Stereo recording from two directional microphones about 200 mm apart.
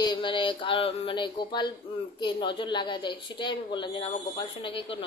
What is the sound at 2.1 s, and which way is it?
A woman's voice, 25° left (ahead or behind).